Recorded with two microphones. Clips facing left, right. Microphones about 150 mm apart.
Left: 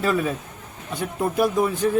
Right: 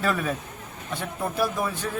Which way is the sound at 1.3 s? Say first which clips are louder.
Left 6 dB; 20° left (ahead or behind).